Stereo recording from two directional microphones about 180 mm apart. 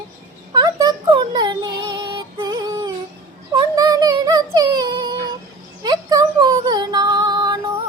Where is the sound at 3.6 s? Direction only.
20° right (ahead or behind).